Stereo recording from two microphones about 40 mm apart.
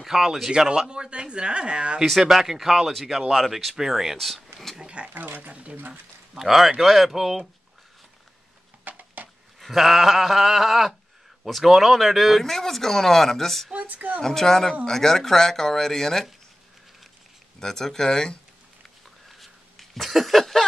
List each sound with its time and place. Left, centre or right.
0.0 s speech: centre
2.0 s speech: centre
2.9 s speech: centre
3.5 s speech: centre
4.7 s a sound: right
5.1 s speech: right
5.5 s speech: right
6.3 s speech: centre
8.8 s a sound: right
9.6 s speech: centre
13.7 s speech: right
14.2 s speech: centre
17.6 s speech: centre
19.2 s a sound: centre